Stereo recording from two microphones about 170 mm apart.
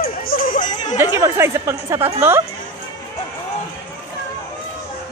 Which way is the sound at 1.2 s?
15° right (ahead or behind).